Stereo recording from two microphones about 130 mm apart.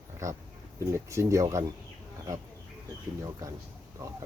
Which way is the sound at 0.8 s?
25° right (ahead or behind).